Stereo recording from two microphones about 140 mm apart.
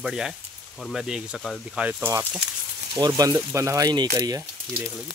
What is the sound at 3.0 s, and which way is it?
Speech, 30° right (ahead or behind).